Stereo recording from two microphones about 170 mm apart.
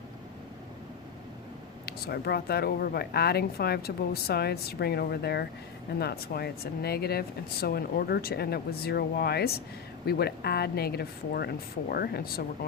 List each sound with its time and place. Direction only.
1.9 s speech: 65° left (ahead or behind)